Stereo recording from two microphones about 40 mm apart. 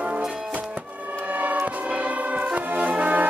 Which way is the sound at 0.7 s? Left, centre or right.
Right.